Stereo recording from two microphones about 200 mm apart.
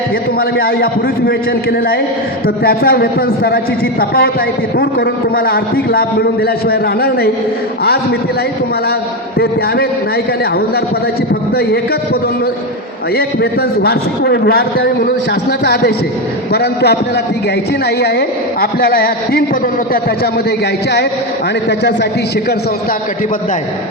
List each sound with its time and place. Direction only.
0.3 s a man's voice: 50° left (ahead or behind)
2.6 s a man's voice: 50° left (ahead or behind)
4.8 s a man's voice: 50° left (ahead or behind)
13.1 s a man's voice: 50° left (ahead or behind)